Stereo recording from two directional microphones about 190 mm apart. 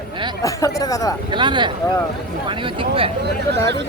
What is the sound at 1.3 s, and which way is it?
Speech, 25° right (ahead or behind).